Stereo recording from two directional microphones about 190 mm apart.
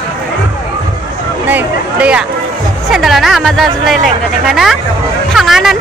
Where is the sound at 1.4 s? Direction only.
10° right (ahead or behind).